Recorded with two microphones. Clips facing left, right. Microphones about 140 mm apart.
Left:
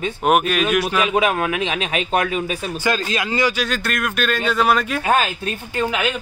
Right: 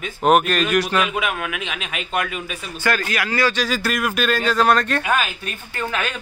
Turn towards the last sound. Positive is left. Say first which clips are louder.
# left 4 dB
turn(degrees=15)  # may be behind; listen again after turning